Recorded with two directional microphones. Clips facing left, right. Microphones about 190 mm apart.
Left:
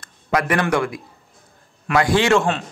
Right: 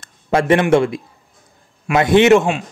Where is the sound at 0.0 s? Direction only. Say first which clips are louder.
Right 4 dB; 25° right (ahead or behind).